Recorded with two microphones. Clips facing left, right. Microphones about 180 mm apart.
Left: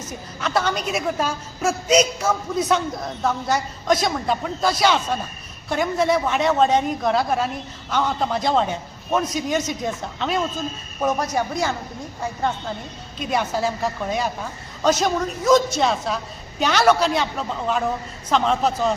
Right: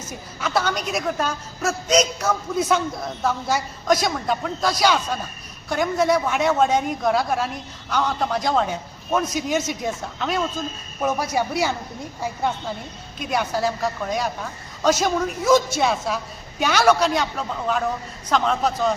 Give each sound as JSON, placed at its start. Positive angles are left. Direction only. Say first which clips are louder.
{"t": 0.3, "sound": "a woman's voice", "louder": "left 1 dB", "side_deg": 0}